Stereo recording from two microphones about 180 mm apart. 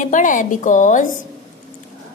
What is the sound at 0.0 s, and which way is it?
A woman's voice, 45° left (ahead or behind).